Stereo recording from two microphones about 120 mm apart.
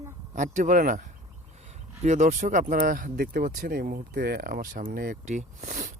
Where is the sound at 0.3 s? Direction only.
90° right.